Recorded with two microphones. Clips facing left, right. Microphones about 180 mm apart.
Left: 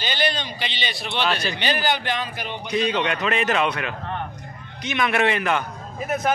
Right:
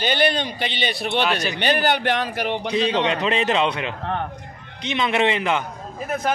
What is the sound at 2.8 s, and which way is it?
Speech, 25° right (ahead or behind).